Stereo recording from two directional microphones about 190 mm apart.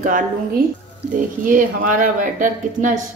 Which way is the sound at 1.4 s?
45° right (ahead or behind).